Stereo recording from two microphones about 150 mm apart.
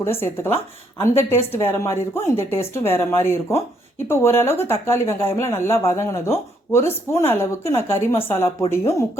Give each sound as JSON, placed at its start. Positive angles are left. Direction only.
{"t": 0.0, "sound": "speech", "side_deg": 15}